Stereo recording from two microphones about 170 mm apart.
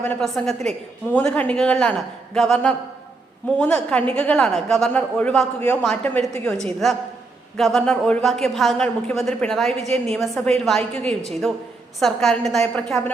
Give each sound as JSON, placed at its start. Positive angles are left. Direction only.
{"t": 0.0, "sound": "a woman's voice", "side_deg": 5}